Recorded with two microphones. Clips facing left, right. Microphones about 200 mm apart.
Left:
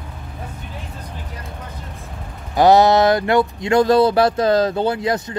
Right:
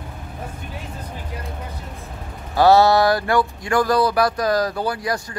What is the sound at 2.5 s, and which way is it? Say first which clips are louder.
Speech: left 2 dB; 20° left (ahead or behind).